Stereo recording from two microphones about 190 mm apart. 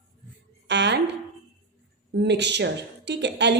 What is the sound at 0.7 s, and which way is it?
Speech, 65° right (ahead or behind).